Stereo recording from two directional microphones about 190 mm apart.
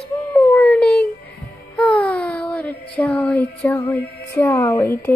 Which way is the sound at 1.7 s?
5° left (ahead or behind).